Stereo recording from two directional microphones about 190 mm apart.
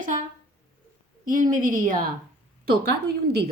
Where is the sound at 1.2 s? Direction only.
45° right (ahead or behind).